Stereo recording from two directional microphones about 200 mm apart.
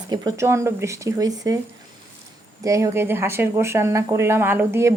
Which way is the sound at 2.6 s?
15° right (ahead or behind).